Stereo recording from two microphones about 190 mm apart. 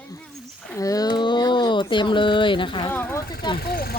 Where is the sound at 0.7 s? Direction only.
15° left (ahead or behind).